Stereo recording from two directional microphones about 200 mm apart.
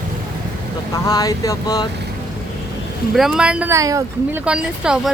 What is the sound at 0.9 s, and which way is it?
Speech, 20° left (ahead or behind).